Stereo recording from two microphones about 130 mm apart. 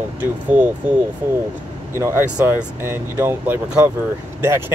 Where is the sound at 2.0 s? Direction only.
15° right (ahead or behind).